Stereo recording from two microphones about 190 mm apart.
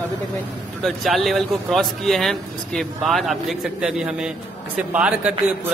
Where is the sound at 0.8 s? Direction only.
Centre (ahead or behind).